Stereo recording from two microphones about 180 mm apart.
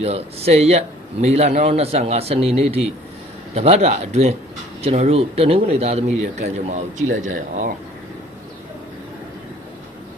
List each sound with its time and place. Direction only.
0.0 s a man's voice: 35° right (ahead or behind)